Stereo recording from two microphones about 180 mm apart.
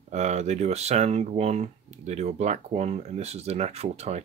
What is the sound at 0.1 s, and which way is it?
Speech, 40° right (ahead or behind).